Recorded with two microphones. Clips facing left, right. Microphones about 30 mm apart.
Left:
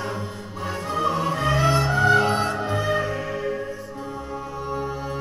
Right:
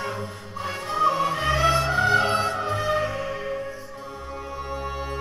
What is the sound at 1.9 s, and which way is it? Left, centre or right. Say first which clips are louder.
Music: left 2 dB; right.